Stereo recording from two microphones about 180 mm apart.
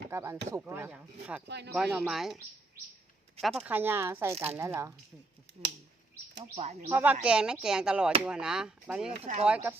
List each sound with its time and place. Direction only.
0.1 s speech: 15° right (ahead or behind)
1.5 s speech: 70° right (ahead or behind)
1.7 s speech: 5° right (ahead or behind)
3.4 s speech: centre (ahead or behind)
3.8 s speech: 10° right (ahead or behind)
6.8 s speech: 10° right (ahead or behind)
9.2 s speech: 40° right (ahead or behind)